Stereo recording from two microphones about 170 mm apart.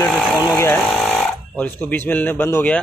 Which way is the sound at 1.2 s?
10° left (ahead or behind).